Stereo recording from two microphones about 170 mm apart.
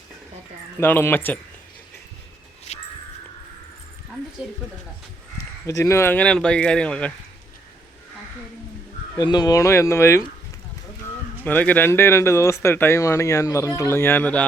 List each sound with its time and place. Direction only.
0.8 s speech: 10° left (ahead or behind)
5.6 s speech: 15° left (ahead or behind)
9.1 s speech: 25° left (ahead or behind)
11.4 s speech: 10° left (ahead or behind)